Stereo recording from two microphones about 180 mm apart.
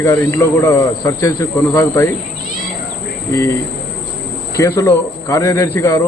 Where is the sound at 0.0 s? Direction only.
15° left (ahead or behind).